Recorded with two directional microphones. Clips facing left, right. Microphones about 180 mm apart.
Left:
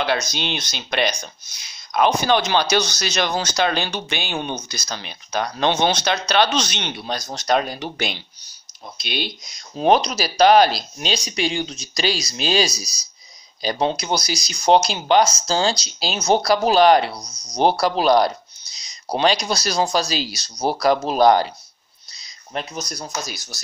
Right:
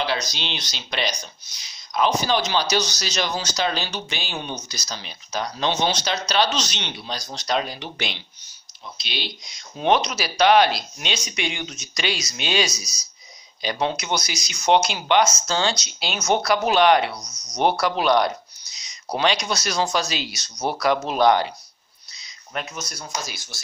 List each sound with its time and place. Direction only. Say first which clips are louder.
0.0 s speech: left 3 dB; 50° left (ahead or behind)
22.2 s a sound: left 2 dB; 35° left (ahead or behind)
23.2 s speech: left 3 dB; 40° left (ahead or behind)